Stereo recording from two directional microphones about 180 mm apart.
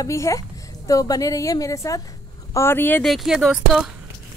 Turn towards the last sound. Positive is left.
turn(degrees=0)  # may be behind; listen again after turning